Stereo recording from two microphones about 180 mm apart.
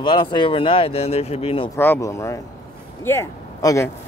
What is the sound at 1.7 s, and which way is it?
Speech, 10° left (ahead or behind).